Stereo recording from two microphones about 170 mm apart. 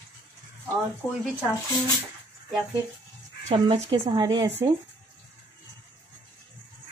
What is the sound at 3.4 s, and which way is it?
Speech, 35° right (ahead or behind).